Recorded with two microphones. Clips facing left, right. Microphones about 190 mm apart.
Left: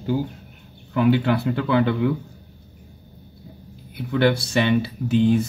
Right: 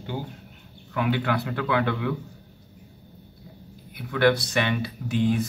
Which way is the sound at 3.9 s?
25° left (ahead or behind).